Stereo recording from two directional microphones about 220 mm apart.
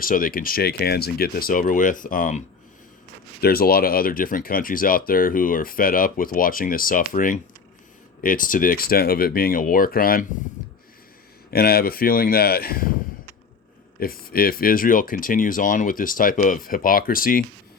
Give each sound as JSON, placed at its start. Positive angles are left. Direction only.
{"t": 0.0, "sound": "speech", "side_deg": 40}
{"t": 3.4, "sound": "speech", "side_deg": 45}
{"t": 11.5, "sound": "speech", "side_deg": 45}
{"t": 14.0, "sound": "speech", "side_deg": 40}